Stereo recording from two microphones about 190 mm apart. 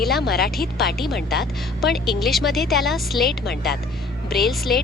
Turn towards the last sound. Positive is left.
turn(degrees=0)  # may be behind; listen again after turning